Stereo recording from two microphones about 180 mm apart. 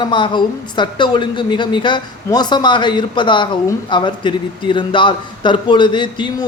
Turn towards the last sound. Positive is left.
turn(degrees=25)  # may be behind; listen again after turning